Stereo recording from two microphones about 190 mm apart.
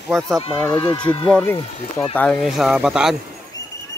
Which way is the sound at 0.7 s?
25° left (ahead or behind).